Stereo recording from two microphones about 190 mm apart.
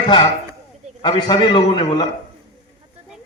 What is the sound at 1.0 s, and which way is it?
A man's voice, 25° left (ahead or behind).